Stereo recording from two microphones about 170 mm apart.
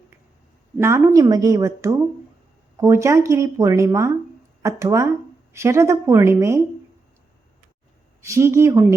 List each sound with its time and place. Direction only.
0.8 s a woman's voice: 15° right (ahead or behind)
8.2 s speech: 15° right (ahead or behind)